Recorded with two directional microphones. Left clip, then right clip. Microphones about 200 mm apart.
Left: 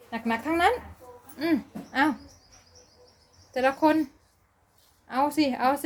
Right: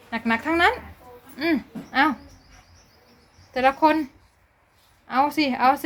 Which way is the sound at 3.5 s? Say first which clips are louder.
Right 4 dB; centre (ahead or behind).